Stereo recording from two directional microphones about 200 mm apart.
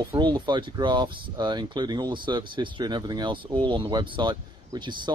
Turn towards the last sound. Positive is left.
turn(degrees=-20)  # may be behind; listen again after turning